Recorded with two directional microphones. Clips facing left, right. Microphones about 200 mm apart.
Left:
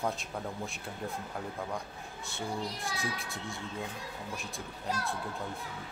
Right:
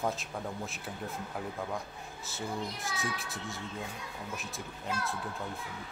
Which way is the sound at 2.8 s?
30° left (ahead or behind).